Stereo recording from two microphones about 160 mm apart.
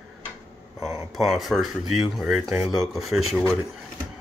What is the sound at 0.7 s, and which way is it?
Speech, 20° right (ahead or behind).